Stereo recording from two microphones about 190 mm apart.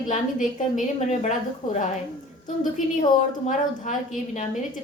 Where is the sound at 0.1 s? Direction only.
40° left (ahead or behind).